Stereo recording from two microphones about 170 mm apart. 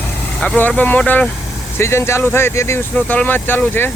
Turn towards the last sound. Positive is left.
turn(degrees=10)  # may be behind; listen again after turning